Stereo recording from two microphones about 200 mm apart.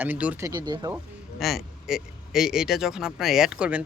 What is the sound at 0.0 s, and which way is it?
Speech, 5° right (ahead or behind).